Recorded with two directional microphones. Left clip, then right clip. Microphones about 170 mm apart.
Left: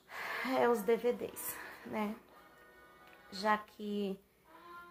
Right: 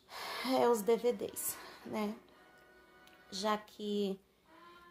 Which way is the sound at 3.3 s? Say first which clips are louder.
Left 2 dB; 30° right (ahead or behind).